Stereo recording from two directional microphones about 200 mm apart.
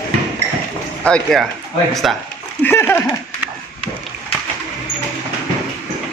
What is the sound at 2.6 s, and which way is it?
Speech, 10° left (ahead or behind).